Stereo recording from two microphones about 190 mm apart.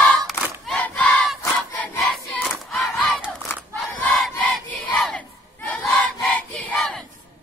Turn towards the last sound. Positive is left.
turn(degrees=5)  # may be behind; listen again after turning